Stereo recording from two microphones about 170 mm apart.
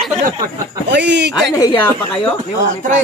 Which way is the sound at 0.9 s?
90° right.